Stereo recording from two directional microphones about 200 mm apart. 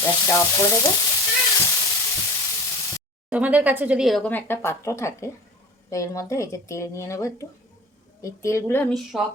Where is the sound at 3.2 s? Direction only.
5° right (ahead or behind); by 8.9 s 10° left (ahead or behind).